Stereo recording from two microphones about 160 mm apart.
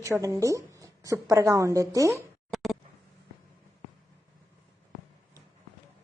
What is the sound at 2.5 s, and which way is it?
Tick, centre (ahead or behind).